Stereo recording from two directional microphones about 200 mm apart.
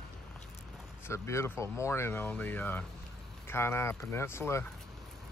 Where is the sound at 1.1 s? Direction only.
15° left (ahead or behind).